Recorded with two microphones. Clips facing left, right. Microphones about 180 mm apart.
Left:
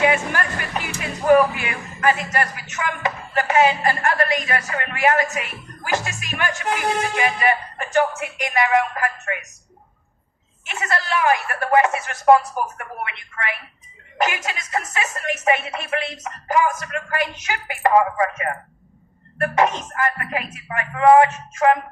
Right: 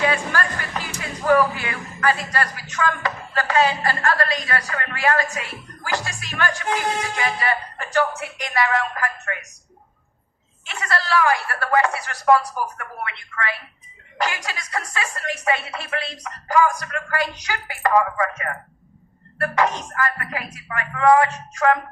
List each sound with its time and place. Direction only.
0.0 s speech: 20° left (ahead or behind)
10.7 s speech: 20° left (ahead or behind)